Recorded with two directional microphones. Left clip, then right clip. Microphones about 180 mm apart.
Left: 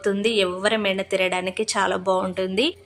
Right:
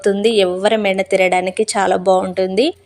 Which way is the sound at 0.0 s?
30° right (ahead or behind).